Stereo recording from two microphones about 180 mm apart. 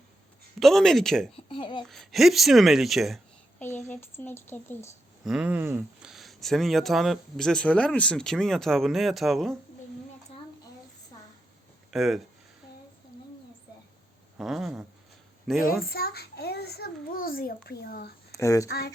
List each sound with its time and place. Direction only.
0.6 s speech: centre (ahead or behind)
1.5 s speech: 30° left (ahead or behind)
1.9 s speech: centre (ahead or behind)
3.8 s speech: 10° left (ahead or behind)
5.2 s speech: 5° right (ahead or behind)
11.9 s speech: centre (ahead or behind)
14.3 s speech: centre (ahead or behind)
15.8 s a child's voice: 55° left (ahead or behind)
18.3 s speech: 15° left (ahead or behind)